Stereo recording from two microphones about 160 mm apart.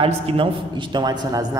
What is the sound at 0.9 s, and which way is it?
Speech, 25° right (ahead or behind).